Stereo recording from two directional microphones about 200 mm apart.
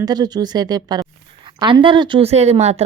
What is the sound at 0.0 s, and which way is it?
Speech, 20° right (ahead or behind).